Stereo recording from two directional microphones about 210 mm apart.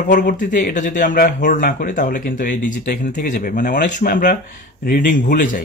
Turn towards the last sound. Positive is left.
turn(degrees=40)  # may be behind; listen again after turning